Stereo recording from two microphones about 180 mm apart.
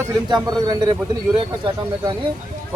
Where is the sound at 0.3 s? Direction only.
25° right (ahead or behind).